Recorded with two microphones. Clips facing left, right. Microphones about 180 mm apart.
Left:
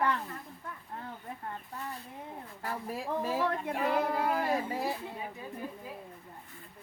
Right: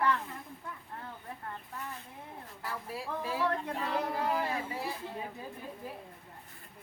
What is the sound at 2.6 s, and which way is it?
Speech, 45° left (ahead or behind).